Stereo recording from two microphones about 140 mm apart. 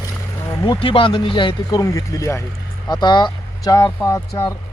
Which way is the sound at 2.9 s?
30° left (ahead or behind).